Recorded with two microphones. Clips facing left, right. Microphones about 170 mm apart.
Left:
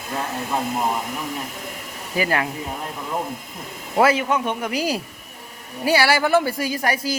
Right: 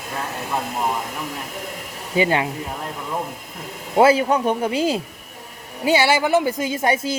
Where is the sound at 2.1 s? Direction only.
25° right (ahead or behind).